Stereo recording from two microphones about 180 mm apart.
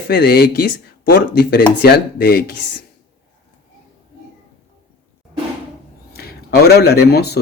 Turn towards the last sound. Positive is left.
turn(degrees=60)  # may be behind; listen again after turning